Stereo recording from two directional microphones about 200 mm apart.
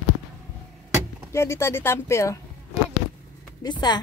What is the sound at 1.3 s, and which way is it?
Speech, 15° left (ahead or behind).